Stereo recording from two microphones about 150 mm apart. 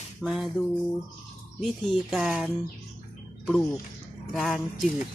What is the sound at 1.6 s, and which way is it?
Speech, centre (ahead or behind).